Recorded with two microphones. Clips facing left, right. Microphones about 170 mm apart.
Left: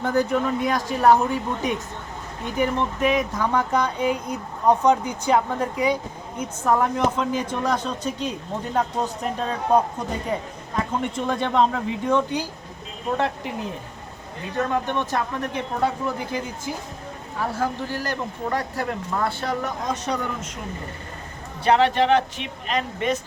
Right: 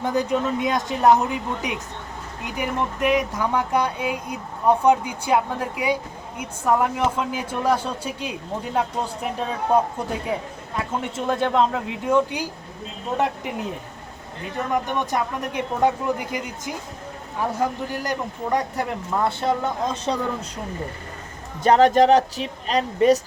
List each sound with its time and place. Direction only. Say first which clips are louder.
0.0 s speech: left 1 dB; 15° right (ahead or behind)
10.3 s speech: left 1 dB; 5° right (ahead or behind)
14.7 s speech: right 4 dB; 15° right (ahead or behind); by 20.5 s 30° right (ahead or behind)
21.6 s speech: right 4 dB; 45° right (ahead or behind)